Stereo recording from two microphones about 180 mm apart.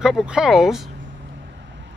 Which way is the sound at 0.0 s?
5° right (ahead or behind).